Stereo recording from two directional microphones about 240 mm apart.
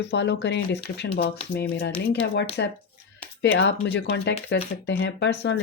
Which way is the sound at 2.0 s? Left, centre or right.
Left.